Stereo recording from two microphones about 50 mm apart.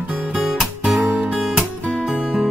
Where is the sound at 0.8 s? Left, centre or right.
Right.